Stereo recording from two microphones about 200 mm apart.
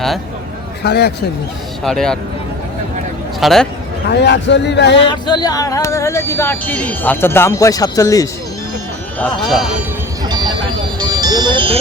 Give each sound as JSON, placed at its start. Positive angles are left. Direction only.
{"t": 0.8, "sound": "a man's voice", "side_deg": 55}
{"t": 1.8, "sound": "speech", "side_deg": 0}
{"t": 3.4, "sound": "speech", "side_deg": 0}
{"t": 4.1, "sound": "a man's voice", "side_deg": 60}
{"t": 5.0, "sound": "speech", "side_deg": 20}
{"t": 9.1, "sound": "speech", "side_deg": 5}
{"t": 10.2, "sound": "a sound", "side_deg": -20}
{"t": 11.0, "sound": "music", "side_deg": -20}